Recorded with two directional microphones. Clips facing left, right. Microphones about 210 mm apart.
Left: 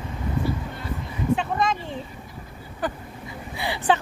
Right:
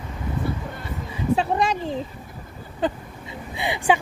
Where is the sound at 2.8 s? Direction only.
20° right (ahead or behind).